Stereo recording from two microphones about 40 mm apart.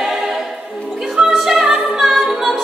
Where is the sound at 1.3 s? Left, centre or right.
Centre.